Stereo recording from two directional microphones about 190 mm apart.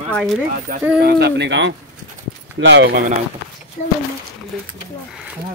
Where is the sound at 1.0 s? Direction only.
60° right (ahead or behind).